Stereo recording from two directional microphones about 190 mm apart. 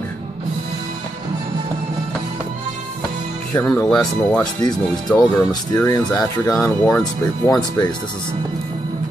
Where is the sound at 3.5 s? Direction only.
5° left (ahead or behind).